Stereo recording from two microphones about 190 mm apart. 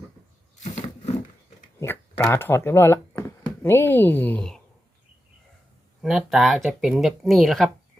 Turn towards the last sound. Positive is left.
turn(degrees=0)  # may be behind; listen again after turning